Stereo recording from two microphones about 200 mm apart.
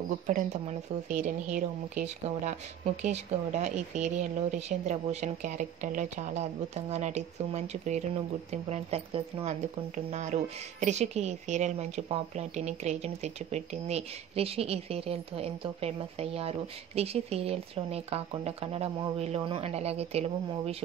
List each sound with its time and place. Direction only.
0.3 s speech: 40° right (ahead or behind)